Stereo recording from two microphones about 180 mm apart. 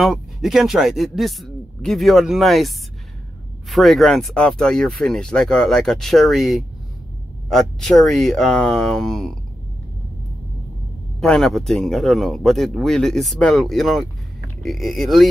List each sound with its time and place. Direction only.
0.0 s speech: centre (ahead or behind)
3.7 s speech: centre (ahead or behind)
11.1 s speech: 5° left (ahead or behind)